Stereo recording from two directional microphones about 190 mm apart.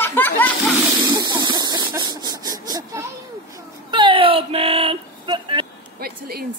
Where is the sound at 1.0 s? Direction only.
25° right (ahead or behind).